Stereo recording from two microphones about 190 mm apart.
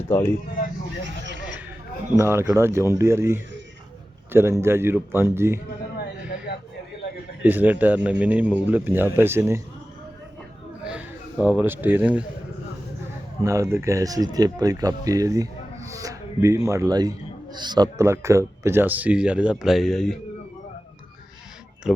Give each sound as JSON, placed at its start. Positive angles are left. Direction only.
{"t": 0.1, "sound": "speech", "side_deg": 10}
{"t": 2.1, "sound": "a man's voice", "side_deg": -15}
{"t": 7.4, "sound": "a man's voice", "side_deg": -10}
{"t": 10.8, "sound": "a man's voice", "side_deg": -5}
{"t": 13.4, "sound": "a man's voice", "side_deg": -15}
{"t": 15.9, "sound": "music", "side_deg": -15}
{"t": 16.6, "sound": "a man's voice", "side_deg": -15}
{"t": 21.9, "sound": "speech", "side_deg": 0}